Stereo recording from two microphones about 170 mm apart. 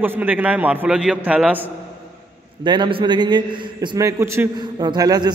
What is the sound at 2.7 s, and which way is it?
A man's voice, 30° right (ahead or behind).